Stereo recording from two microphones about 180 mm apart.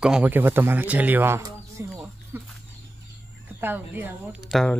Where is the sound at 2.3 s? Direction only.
15° right (ahead or behind).